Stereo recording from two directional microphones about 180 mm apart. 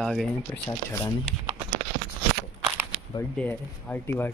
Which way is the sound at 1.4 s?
30° right (ahead or behind).